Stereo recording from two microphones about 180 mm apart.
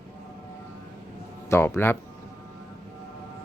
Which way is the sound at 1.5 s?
15° left (ahead or behind).